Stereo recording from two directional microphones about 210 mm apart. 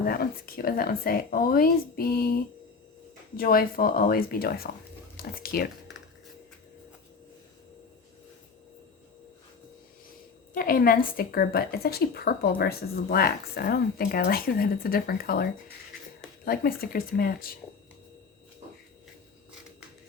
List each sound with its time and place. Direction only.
0.0 s a woman's voice: 45° left (ahead or behind)
3.3 s a woman's voice: 45° left (ahead or behind)
10.5 s a woman's voice: 40° left (ahead or behind)
16.5 s a woman's voice: 45° left (ahead or behind)